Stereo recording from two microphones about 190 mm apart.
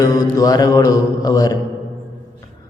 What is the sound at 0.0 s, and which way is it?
A man's voice, 20° left (ahead or behind).